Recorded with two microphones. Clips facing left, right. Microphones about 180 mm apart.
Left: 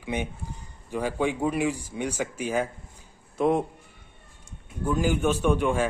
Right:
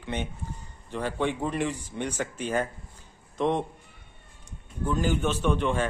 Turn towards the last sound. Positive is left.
turn(degrees=10)  # may be behind; listen again after turning